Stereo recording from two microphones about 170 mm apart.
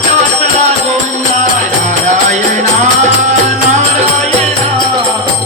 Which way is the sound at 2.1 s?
45° right (ahead or behind).